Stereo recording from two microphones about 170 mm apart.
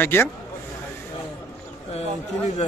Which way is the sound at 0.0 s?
10° left (ahead or behind).